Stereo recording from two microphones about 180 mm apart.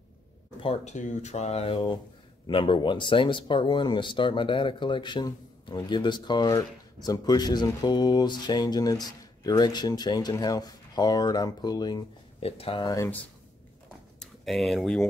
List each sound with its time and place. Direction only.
0.6 s speech: 35° left (ahead or behind); by 13.2 s 15° left (ahead or behind)
14.2 s speech: centre (ahead or behind)